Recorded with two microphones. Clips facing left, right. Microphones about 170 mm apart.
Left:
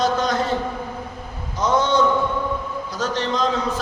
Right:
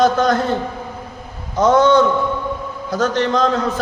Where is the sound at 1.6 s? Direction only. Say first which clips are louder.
Right 6 dB; 50° right (ahead or behind).